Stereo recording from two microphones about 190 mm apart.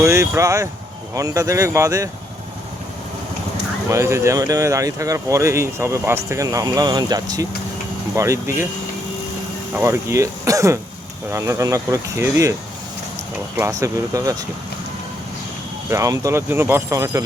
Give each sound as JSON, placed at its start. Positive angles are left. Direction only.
{"t": 0.0, "sound": "speech", "side_deg": -15}
{"t": 3.8, "sound": "speech", "side_deg": -15}
{"t": 9.7, "sound": "speech", "side_deg": -15}
{"t": 13.6, "sound": "speech", "side_deg": -15}
{"t": 15.9, "sound": "speech", "side_deg": -15}